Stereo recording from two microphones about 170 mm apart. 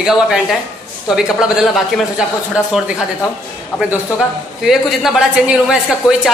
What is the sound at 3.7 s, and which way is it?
Speech, 15° left (ahead or behind).